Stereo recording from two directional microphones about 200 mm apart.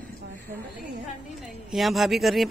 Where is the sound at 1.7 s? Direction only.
Centre (ahead or behind).